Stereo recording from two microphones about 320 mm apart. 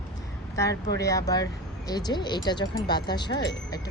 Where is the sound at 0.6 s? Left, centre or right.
Centre.